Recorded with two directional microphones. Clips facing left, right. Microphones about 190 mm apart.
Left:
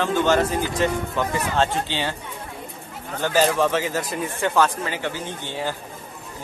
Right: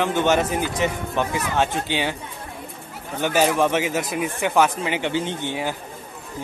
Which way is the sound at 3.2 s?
15° right (ahead or behind).